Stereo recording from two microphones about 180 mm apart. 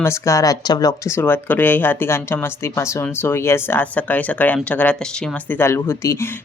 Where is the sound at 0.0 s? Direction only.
15° left (ahead or behind).